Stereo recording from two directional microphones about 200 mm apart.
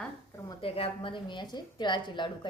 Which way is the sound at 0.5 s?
30° left (ahead or behind).